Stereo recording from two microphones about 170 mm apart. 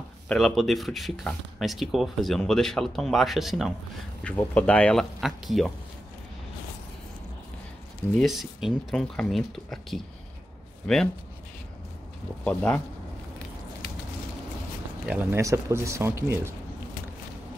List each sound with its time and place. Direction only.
0.3 s speech: centre (ahead or behind)
8.2 s speech: centre (ahead or behind)
12.4 s speech: 5° left (ahead or behind)
15.0 s speech: 15° right (ahead or behind)